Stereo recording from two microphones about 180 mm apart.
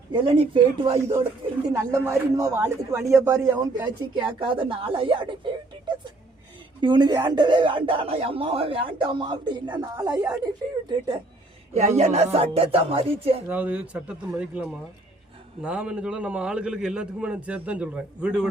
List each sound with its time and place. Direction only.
0.1 s speech: 30° right (ahead or behind)
1.7 s speech: 15° right (ahead or behind)
4.4 s speech: 30° right (ahead or behind)
6.8 s speech: 25° right (ahead or behind)
11.7 s speech: 40° right (ahead or behind)
13.5 s a man's voice: 10° right (ahead or behind)